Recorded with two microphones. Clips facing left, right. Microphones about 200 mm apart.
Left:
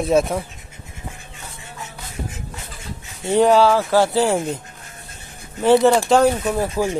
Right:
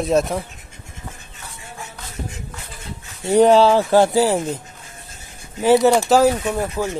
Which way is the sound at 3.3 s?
20° right (ahead or behind).